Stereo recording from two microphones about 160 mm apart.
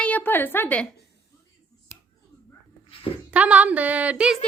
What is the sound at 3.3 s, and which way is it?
A woman's voice, 10° right (ahead or behind).